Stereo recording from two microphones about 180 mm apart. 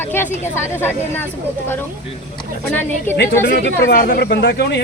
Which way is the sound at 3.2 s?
60° left (ahead or behind).